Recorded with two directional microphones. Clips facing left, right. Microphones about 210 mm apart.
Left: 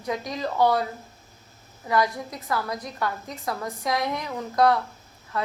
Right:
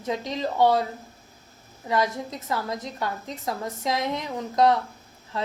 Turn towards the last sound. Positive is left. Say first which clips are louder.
# left 1 dB
turn(degrees=-20)  # may be behind; listen again after turning